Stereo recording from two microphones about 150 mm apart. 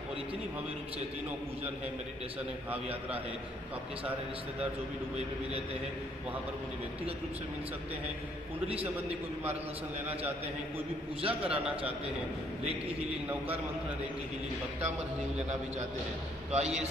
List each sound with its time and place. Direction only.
11.1 s a man's voice: 40° right (ahead or behind)
16.5 s a man's voice: 45° right (ahead or behind)